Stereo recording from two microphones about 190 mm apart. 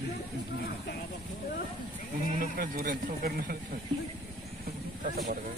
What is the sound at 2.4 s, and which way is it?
Speech, 50° right (ahead or behind).